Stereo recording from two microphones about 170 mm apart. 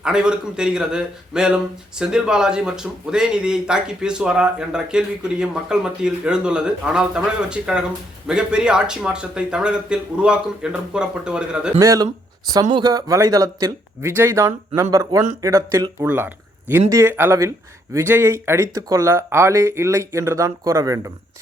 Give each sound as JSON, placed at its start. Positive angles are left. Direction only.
{"t": 0.0, "sound": "a man's voice", "side_deg": -5}
{"t": 11.8, "sound": "speech", "side_deg": -20}